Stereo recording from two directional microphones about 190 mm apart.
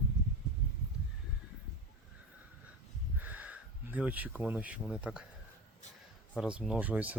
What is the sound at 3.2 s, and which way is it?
Speech, 10° right (ahead or behind).